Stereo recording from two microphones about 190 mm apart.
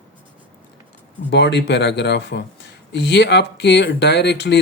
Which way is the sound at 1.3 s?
65° left (ahead or behind).